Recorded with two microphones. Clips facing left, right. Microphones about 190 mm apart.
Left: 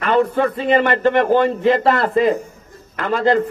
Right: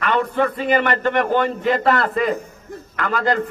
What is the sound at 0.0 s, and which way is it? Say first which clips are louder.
A man's voice: left 3 dB; 35° left (ahead or behind).